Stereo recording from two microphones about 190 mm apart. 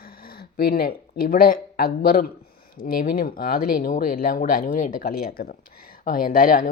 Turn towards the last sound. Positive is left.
turn(degrees=45)  # may be behind; listen again after turning